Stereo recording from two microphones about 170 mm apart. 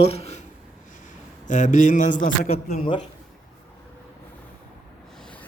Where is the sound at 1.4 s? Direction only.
50° left (ahead or behind).